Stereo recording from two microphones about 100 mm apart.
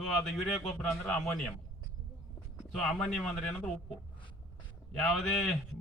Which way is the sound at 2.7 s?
5° left (ahead or behind).